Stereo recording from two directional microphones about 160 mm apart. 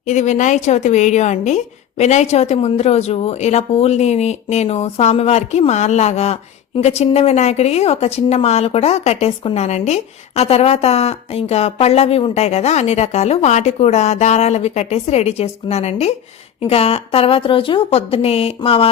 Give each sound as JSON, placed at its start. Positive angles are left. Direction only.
{"t": 0.1, "sound": "a woman's voice", "side_deg": 50}